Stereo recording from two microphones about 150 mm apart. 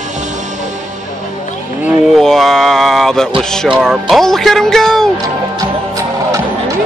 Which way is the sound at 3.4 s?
5° left (ahead or behind).